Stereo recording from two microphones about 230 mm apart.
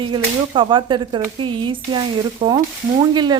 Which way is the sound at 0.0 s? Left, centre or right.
Right.